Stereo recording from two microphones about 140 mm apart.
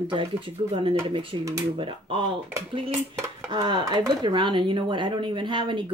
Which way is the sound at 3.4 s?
35° right (ahead or behind).